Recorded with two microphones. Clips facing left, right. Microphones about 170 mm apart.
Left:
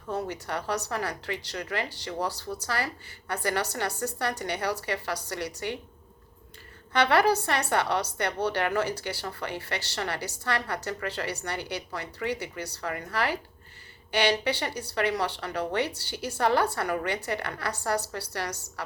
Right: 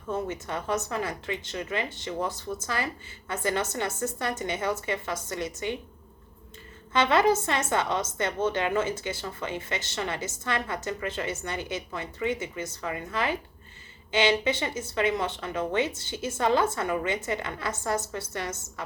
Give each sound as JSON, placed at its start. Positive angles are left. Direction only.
{"t": 0.1, "sound": "a woman's voice", "side_deg": -20}
{"t": 6.9, "sound": "a woman's voice", "side_deg": -20}